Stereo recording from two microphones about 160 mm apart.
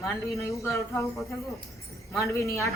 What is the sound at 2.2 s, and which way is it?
Speech, 20° left (ahead or behind).